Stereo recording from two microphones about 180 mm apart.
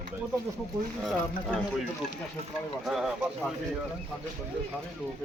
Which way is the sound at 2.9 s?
Centre (ahead or behind).